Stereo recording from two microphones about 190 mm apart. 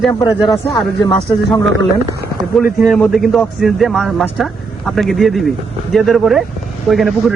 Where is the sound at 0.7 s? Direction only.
25° left (ahead or behind).